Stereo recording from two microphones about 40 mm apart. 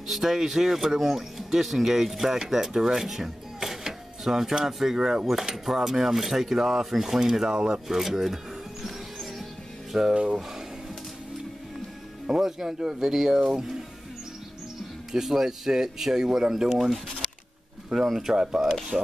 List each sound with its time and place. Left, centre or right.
0.1 s speech: centre
5.2 s cutlery: centre
8.0 s speech: centre
9.9 s cutlery: centre
12.4 s cutlery: centre
15.1 s cutlery: centre
16.7 s speech: centre
18.0 s speech: centre
18.3 s cutlery: centre